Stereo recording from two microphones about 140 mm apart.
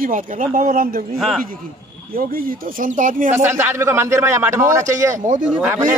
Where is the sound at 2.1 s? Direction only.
80° right.